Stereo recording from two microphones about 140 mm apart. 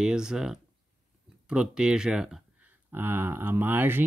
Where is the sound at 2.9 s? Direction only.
15° right (ahead or behind).